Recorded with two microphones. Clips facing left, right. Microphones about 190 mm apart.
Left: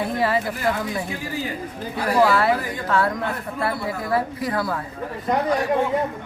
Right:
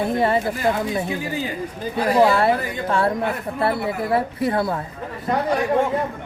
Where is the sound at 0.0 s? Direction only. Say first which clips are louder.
Right 3 dB; 25° right (ahead or behind).